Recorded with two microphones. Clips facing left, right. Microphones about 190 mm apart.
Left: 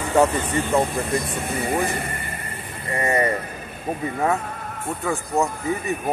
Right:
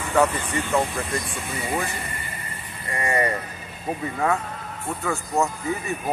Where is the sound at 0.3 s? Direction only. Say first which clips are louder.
Left 3 dB; 45° left (ahead or behind).